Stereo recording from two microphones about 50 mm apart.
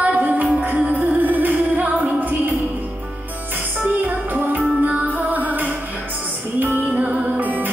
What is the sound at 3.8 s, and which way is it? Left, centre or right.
Music, right.